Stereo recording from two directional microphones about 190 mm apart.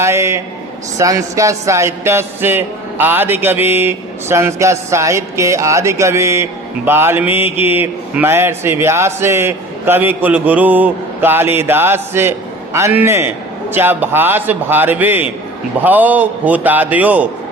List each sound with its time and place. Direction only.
0.0 s speech: 15° right (ahead or behind)